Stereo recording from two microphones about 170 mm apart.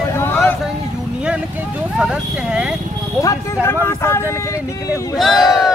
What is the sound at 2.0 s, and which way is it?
Speech, 5° right (ahead or behind).